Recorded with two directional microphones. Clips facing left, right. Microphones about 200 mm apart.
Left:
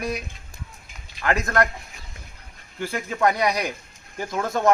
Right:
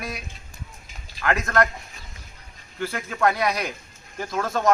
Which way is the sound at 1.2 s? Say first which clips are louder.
Even; 25° left (ahead or behind).